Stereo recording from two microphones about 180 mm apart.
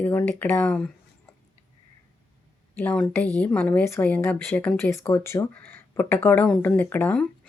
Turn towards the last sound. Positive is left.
turn(degrees=10)  # may be behind; listen again after turning